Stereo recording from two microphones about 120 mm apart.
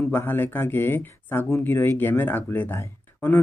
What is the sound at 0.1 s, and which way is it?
Speech, 20° left (ahead or behind).